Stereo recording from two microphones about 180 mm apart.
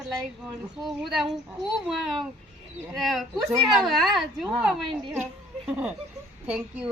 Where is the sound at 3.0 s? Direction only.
Centre (ahead or behind).